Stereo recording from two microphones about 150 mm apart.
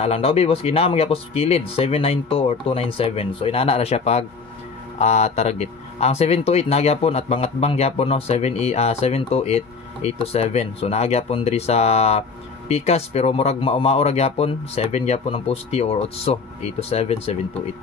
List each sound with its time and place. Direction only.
0.0 s speech: 40° left (ahead or behind)